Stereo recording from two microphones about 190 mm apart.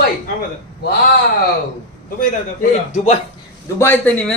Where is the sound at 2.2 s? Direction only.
40° left (ahead or behind).